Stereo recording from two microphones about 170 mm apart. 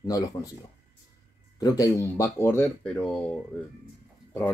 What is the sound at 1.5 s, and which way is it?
Speech, 20° left (ahead or behind).